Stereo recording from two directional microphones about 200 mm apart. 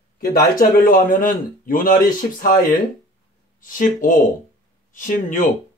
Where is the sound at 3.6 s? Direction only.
45° left (ahead or behind).